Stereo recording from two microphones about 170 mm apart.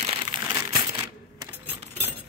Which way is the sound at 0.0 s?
30° right (ahead or behind).